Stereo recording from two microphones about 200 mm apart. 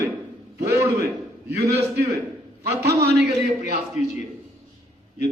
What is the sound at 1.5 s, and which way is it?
Speech, 55° right (ahead or behind).